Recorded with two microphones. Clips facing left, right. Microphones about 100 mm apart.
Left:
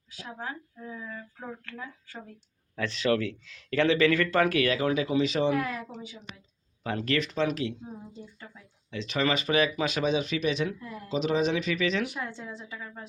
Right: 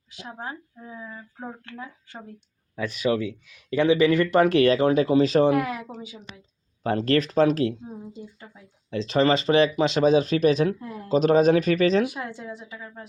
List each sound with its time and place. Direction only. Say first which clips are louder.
0.3 s speech: right 2 dB; 20° right (ahead or behind)
2.7 s speech: right 2 dB; 10° right (ahead or behind); by 5.5 s 40° right (ahead or behind)
5.5 s a woman's voice: right 5 dB; 15° right (ahead or behind)
6.8 s speech: right 7 dB; 35° right (ahead or behind)
8.9 s speech: right 7 dB; 35° right (ahead or behind)
12.3 s a woman's voice: right 3 dB; 10° right (ahead or behind)